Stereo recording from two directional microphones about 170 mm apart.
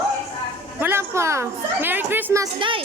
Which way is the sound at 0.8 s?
15° right (ahead or behind).